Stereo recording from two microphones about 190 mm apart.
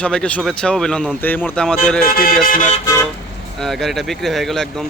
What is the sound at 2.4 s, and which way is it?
Speech, 45° left (ahead or behind).